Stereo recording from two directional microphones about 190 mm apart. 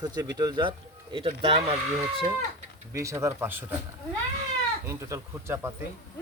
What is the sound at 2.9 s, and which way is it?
Speech, 15° right (ahead or behind).